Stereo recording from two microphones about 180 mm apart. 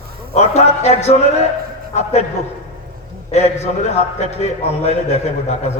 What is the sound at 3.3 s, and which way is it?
A man's voice, 40° left (ahead or behind).